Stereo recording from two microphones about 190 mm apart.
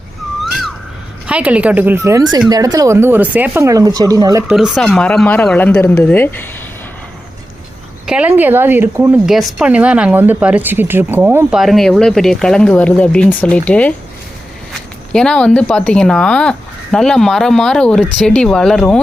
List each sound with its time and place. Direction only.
0.4 s a sound: centre (ahead or behind)
1.3 s a woman's voice: 5° right (ahead or behind)
4.5 s speech: centre (ahead or behind)
8.0 s a woman's voice: 5° right (ahead or behind)
11.6 s speech: centre (ahead or behind)